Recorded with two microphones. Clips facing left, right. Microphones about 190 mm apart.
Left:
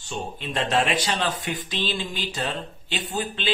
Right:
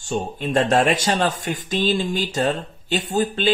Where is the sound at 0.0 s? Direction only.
45° right (ahead or behind).